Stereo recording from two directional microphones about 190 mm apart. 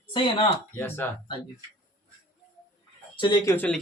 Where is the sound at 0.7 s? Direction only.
10° left (ahead or behind).